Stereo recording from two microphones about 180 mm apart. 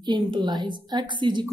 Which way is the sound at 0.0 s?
25° right (ahead or behind).